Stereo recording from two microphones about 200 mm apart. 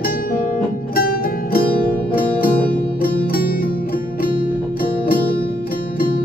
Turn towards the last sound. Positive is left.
turn(degrees=45)  # may be behind; listen again after turning